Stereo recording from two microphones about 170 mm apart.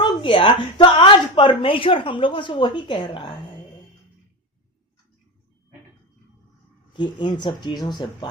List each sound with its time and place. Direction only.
0.0 s a woman's voice: 30° left (ahead or behind)
6.9 s a woman's voice: 25° left (ahead or behind)